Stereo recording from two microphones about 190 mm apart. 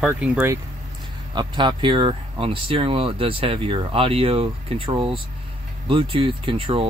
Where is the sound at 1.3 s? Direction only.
25° right (ahead or behind).